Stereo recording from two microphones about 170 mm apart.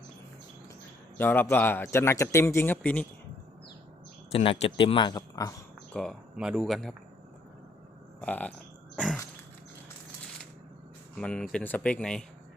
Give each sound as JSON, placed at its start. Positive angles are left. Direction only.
{"t": 1.2, "sound": "a man's voice", "side_deg": 10}
{"t": 4.3, "sound": "a man's voice", "side_deg": 35}
{"t": 5.9, "sound": "speech", "side_deg": 5}
{"t": 8.2, "sound": "a man's voice", "side_deg": 10}
{"t": 11.2, "sound": "speech", "side_deg": 5}